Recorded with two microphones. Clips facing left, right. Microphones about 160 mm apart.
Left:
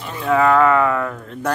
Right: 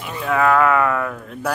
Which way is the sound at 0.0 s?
Centre (ahead or behind).